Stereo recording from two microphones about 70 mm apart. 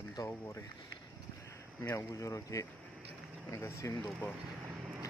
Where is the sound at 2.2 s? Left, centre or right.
Left.